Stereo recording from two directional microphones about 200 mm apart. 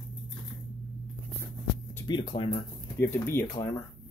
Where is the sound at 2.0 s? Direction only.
25° left (ahead or behind).